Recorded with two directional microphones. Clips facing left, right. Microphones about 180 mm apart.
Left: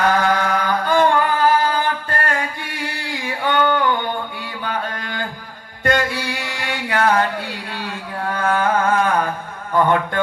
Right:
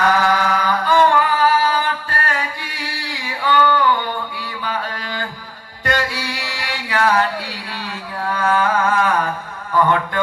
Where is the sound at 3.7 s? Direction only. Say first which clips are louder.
Right 1 dB; 50° left (ahead or behind).